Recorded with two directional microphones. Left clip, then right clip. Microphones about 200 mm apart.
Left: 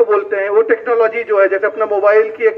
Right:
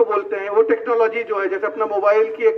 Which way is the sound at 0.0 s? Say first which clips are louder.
Left 5 dB; 40° right (ahead or behind).